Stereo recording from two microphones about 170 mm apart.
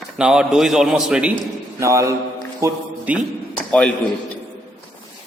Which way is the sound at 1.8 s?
15° right (ahead or behind).